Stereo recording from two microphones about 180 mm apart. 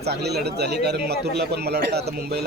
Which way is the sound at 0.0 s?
65° right (ahead or behind).